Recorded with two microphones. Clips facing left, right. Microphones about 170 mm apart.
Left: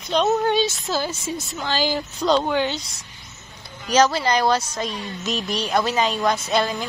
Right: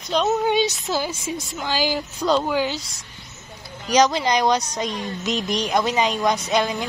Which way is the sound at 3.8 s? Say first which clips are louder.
Even; 15° right (ahead or behind).